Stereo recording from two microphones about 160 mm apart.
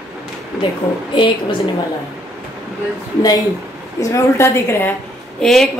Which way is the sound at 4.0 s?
20° left (ahead or behind).